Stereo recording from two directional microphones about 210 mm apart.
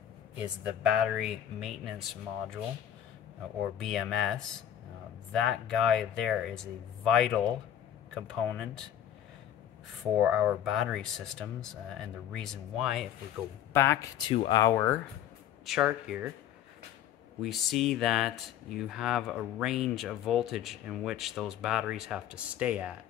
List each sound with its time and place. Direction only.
0.4 s speech: 5° right (ahead or behind)
3.7 s speech: centre (ahead or behind)
10.2 s speech: 5° right (ahead or behind)
13.7 s speech: 15° left (ahead or behind)
14.6 s speech: 10° left (ahead or behind)
15.6 s speech: centre (ahead or behind)
17.4 s speech: centre (ahead or behind)